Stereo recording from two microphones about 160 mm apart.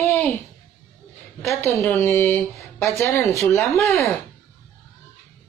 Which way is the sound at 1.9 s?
15° left (ahead or behind).